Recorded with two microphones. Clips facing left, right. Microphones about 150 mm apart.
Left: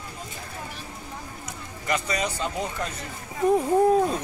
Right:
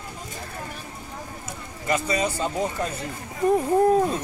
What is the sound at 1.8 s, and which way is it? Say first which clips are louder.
Speech: right 3 dB; 25° right (ahead or behind).